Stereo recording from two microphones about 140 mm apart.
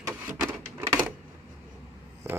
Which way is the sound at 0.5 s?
15° right (ahead or behind).